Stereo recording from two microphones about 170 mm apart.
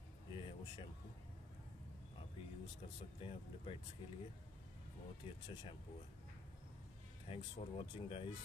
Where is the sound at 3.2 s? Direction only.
30° left (ahead or behind).